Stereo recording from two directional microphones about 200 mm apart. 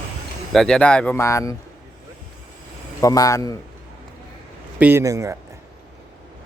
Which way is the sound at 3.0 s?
15° left (ahead or behind).